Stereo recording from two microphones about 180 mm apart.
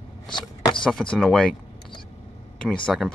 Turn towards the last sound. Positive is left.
turn(degrees=-5)  # may be behind; listen again after turning